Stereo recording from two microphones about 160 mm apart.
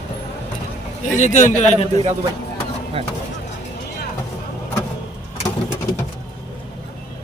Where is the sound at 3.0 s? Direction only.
35° right (ahead or behind).